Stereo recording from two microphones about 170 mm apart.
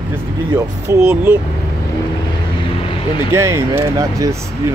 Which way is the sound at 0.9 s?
15° right (ahead or behind).